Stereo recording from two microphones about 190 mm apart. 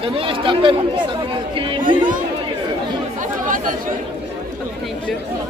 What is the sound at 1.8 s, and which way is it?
Chatter, 45° right (ahead or behind).